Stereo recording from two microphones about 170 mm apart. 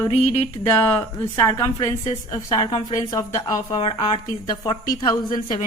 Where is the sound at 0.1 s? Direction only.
35° left (ahead or behind).